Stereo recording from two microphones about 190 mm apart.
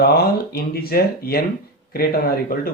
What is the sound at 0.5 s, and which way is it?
Speech, 55° left (ahead or behind).